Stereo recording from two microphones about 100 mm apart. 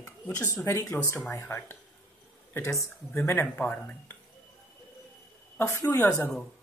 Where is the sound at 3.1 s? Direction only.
20° left (ahead or behind).